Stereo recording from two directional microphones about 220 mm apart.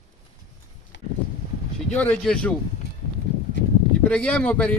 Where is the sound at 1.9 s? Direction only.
5° left (ahead or behind).